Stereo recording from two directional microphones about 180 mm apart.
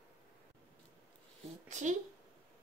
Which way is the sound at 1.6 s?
40° right (ahead or behind).